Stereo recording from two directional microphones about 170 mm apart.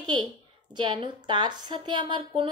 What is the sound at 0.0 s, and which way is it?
A woman's voice, 25° right (ahead or behind).